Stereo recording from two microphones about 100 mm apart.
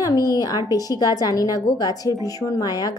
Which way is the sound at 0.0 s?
40° left (ahead or behind).